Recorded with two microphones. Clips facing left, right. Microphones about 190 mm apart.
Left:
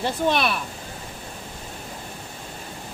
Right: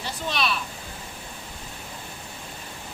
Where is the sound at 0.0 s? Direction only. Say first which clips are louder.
Left 7 dB; 55° left (ahead or behind).